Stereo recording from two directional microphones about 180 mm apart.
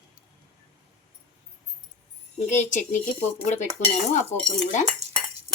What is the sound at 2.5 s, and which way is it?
Speech, 40° left (ahead or behind).